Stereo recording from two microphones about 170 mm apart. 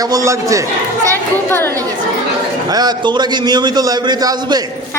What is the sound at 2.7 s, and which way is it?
A man's voice, 25° right (ahead or behind).